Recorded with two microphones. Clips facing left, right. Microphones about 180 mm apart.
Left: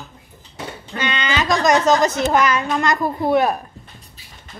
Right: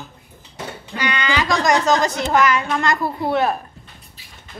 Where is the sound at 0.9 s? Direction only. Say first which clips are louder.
Right 1 dB; 20° left (ahead or behind).